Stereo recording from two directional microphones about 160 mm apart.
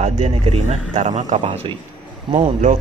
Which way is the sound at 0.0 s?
45° right (ahead or behind).